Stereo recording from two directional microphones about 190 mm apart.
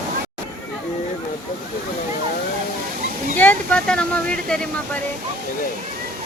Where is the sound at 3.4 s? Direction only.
5° left (ahead or behind).